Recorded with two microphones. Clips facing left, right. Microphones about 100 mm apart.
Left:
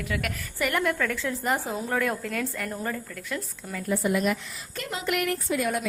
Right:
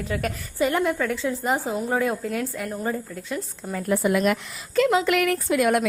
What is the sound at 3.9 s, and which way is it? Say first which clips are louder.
A woman's voice: right 4 dB; 85° right.